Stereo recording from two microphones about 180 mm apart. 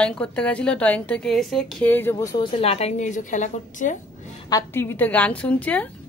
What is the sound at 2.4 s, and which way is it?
A woman's voice, 35° left (ahead or behind).